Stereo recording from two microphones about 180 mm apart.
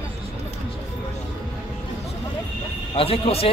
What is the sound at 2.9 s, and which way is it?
Speech, 30° left (ahead or behind).